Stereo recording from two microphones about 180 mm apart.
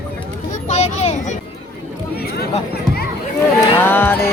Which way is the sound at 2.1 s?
60° left (ahead or behind).